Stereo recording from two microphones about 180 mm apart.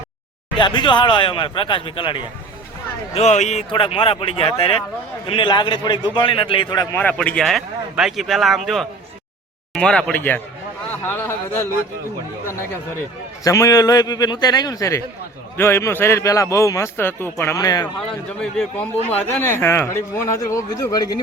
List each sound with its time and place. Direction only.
0.5 s speech: 25° left (ahead or behind)
3.2 s speech: 40° left (ahead or behind)
6.9 s a man's voice: 5° left (ahead or behind)
13.4 s a man's voice: 20° left (ahead or behind)
18.1 s a man's voice: 5° left (ahead or behind); by 21.2 s 20° left (ahead or behind)